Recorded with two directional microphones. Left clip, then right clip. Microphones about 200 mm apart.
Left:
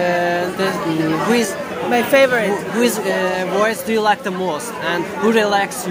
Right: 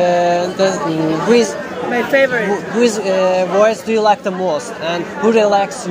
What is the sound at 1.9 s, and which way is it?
Speech, 40° left (ahead or behind).